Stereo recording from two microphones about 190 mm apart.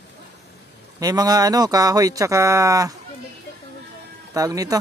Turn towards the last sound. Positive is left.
turn(degrees=-20)  # may be behind; listen again after turning